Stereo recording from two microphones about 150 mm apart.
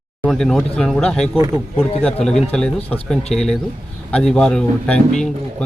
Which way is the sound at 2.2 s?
5° left (ahead or behind).